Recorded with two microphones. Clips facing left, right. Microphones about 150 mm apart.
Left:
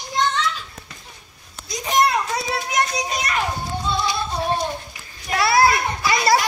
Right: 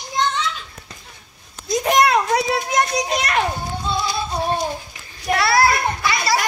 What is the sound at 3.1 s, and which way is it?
Children playing, 75° right (ahead or behind).